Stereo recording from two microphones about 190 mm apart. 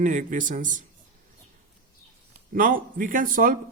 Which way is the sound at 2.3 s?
45° right (ahead or behind).